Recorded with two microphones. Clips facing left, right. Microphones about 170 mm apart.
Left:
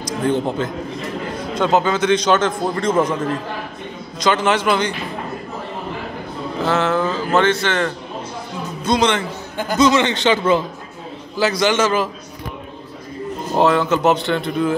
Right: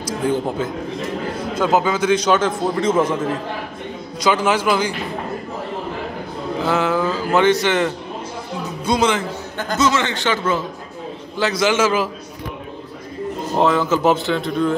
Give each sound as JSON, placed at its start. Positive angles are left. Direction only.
{"t": 0.2, "sound": "a man's voice", "side_deg": -10}
{"t": 4.2, "sound": "a man's voice", "side_deg": -10}
{"t": 6.6, "sound": "a man's voice", "side_deg": -10}
{"t": 9.6, "sound": "speech", "side_deg": 15}
{"t": 11.3, "sound": "speech", "side_deg": 0}
{"t": 13.6, "sound": "speech", "side_deg": 0}